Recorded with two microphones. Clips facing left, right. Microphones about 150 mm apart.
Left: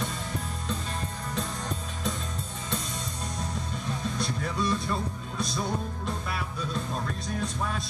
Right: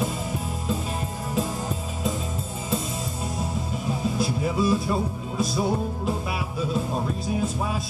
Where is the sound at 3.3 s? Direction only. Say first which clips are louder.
Right 5 dB; 5° right (ahead or behind).